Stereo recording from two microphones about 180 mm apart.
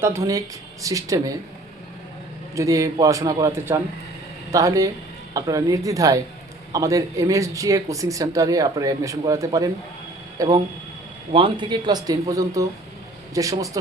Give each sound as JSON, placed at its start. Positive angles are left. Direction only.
{"t": 0.0, "sound": "speech", "side_deg": -15}
{"t": 2.6, "sound": "speech", "side_deg": -15}